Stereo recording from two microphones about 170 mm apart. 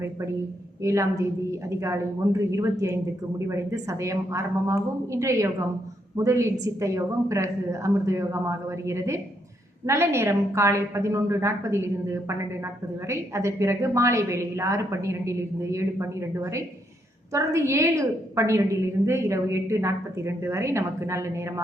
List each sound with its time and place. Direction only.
0.8 s a woman's voice: 20° right (ahead or behind)